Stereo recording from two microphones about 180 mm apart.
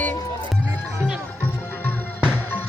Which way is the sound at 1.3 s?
10° left (ahead or behind).